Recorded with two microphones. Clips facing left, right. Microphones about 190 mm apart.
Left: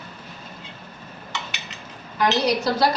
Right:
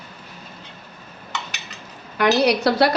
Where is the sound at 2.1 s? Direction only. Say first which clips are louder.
Right 3 dB; 70° right (ahead or behind).